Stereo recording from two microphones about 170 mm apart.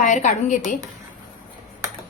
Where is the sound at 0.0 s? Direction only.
45° left (ahead or behind).